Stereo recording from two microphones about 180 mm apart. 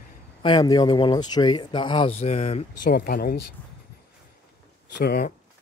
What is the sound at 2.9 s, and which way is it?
Speech, 55° left (ahead or behind).